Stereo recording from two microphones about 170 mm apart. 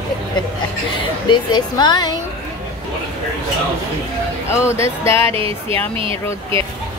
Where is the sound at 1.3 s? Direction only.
25° left (ahead or behind).